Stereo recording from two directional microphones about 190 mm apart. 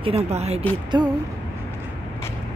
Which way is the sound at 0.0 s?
30° right (ahead or behind).